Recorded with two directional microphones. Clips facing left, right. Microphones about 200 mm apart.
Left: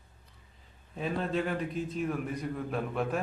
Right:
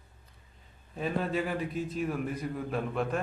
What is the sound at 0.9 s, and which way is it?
A man's voice, centre (ahead or behind).